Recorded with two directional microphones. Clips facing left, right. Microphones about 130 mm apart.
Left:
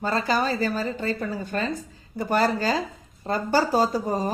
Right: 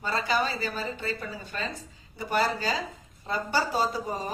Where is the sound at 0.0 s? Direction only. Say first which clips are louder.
Left 4 dB; 40° left (ahead or behind).